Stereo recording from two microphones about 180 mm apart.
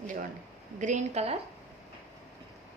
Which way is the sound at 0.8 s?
40° right (ahead or behind).